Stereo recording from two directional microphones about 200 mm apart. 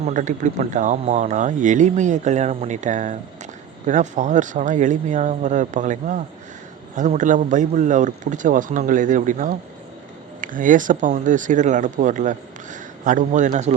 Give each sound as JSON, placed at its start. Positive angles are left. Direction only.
{"t": 0.0, "sound": "speech", "side_deg": -40}